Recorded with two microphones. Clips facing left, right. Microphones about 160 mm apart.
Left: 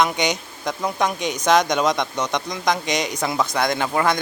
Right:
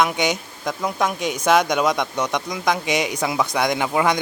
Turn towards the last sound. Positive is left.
turn(degrees=-15)  # may be behind; listen again after turning